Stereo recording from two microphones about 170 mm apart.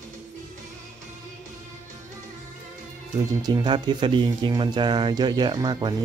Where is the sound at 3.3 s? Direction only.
25° right (ahead or behind).